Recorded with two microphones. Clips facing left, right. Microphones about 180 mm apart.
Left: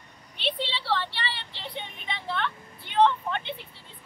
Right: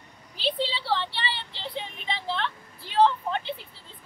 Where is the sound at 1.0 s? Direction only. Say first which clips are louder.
Right 2 dB; centre (ahead or behind).